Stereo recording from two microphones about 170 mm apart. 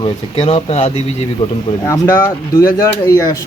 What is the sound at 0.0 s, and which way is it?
Speech, 35° left (ahead or behind).